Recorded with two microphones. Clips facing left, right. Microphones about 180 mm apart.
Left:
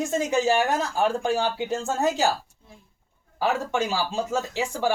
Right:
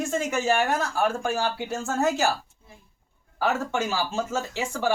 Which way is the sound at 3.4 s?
15° left (ahead or behind).